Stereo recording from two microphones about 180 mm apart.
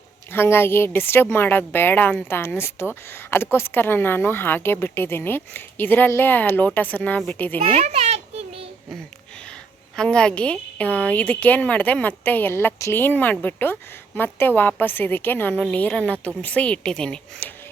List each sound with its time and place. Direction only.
0.3 s a woman's voice: 15° left (ahead or behind)
7.6 s a sound: 35° right (ahead or behind)
9.9 s a woman's voice: 5° left (ahead or behind)